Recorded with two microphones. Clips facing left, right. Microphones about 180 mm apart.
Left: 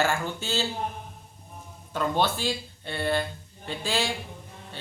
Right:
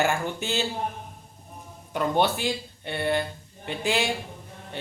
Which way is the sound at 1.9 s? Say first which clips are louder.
Right 2 dB; 15° right (ahead or behind).